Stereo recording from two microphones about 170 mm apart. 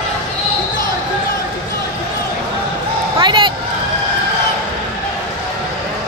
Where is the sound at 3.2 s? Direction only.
30° right (ahead or behind).